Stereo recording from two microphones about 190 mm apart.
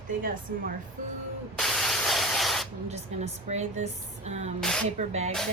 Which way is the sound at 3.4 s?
35° right (ahead or behind).